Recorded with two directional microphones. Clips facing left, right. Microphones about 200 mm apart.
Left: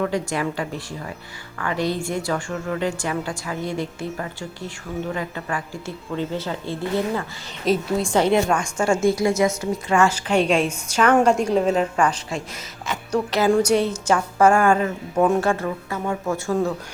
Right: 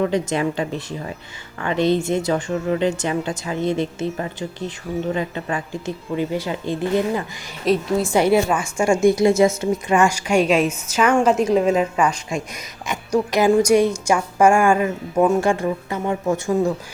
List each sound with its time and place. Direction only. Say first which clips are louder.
0.0 s speech: right 3 dB; 20° right (ahead or behind)
7.6 s a woman's voice: right 2 dB; centre (ahead or behind)